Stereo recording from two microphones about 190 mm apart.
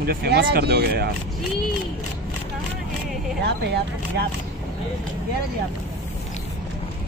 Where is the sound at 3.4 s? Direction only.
60° right (ahead or behind).